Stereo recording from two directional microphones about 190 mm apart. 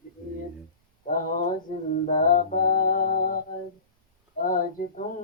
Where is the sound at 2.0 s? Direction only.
45° left (ahead or behind).